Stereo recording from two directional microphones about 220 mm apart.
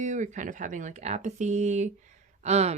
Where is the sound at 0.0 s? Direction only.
35° right (ahead or behind).